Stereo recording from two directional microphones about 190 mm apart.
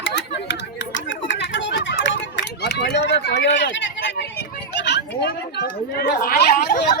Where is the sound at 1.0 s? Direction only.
70° left (ahead or behind).